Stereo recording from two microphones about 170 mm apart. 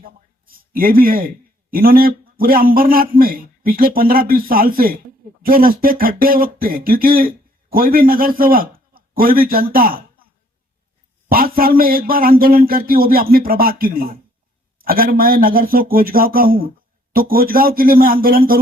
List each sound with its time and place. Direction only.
0.0 s a man's voice: 60° right (ahead or behind)
11.3 s a man's voice: 60° right (ahead or behind)